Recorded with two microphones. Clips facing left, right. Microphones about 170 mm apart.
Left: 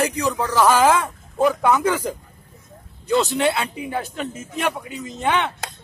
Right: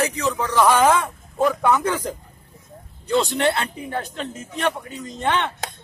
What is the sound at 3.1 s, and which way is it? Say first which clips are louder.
A man's voice: even; 10° left (ahead or behind).